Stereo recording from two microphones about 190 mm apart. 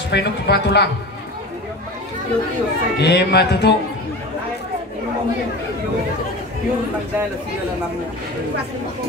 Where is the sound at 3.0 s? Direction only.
60° left (ahead or behind).